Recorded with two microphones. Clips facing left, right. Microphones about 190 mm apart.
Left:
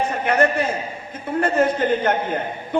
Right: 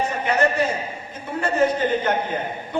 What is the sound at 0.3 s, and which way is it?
A man's voice, 55° left (ahead or behind).